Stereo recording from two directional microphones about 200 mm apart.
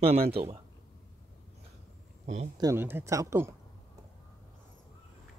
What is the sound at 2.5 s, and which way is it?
Speech, 15° right (ahead or behind).